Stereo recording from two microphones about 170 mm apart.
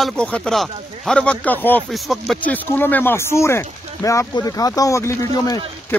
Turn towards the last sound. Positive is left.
turn(degrees=20)  # may be behind; listen again after turning